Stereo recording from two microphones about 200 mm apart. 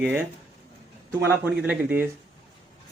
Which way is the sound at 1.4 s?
10° right (ahead or behind).